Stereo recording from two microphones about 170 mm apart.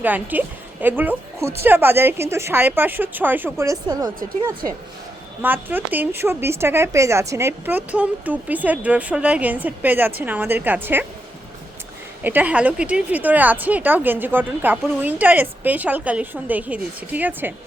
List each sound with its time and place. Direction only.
0.0 s speech: 10° right (ahead or behind)
5.4 s speech: 10° right (ahead or behind)
12.2 s speech: 10° right (ahead or behind)